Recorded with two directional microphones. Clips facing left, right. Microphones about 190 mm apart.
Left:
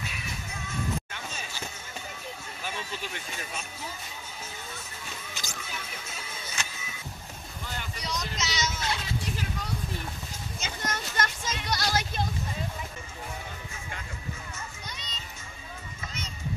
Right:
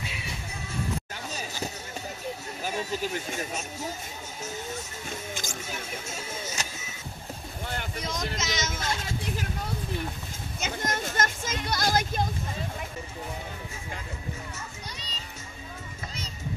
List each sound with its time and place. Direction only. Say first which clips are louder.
1.1 s a sound: right 3 dB; 40° right (ahead or behind)
2.6 s speech: right 7 dB; 40° right (ahead or behind)
5.1 s music: right 7 dB; 50° right (ahead or behind)
7.6 s vehicle: right 4 dB; 55° right (ahead or behind)
10.6 s speech: right 4 dB; 50° right (ahead or behind)
15.0 s music: right 2 dB; 35° right (ahead or behind)